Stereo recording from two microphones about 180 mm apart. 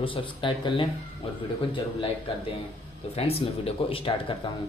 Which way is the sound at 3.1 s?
35° left (ahead or behind).